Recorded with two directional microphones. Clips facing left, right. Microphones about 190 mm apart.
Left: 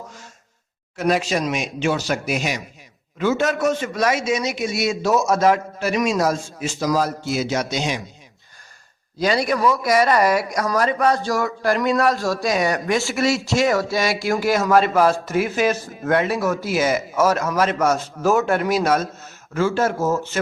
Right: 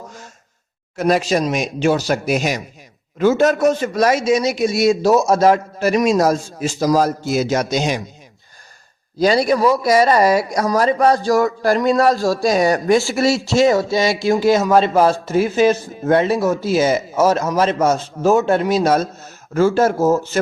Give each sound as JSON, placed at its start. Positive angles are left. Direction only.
{"t": 0.9, "sound": "a man's voice", "side_deg": -40}
{"t": 9.1, "sound": "a man's voice", "side_deg": -35}